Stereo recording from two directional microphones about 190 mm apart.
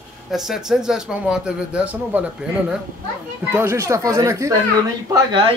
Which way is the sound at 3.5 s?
15° right (ahead or behind).